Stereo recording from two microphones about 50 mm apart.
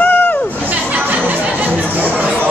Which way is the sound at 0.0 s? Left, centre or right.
Left.